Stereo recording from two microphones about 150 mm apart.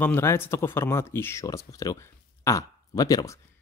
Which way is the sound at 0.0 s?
15° left (ahead or behind).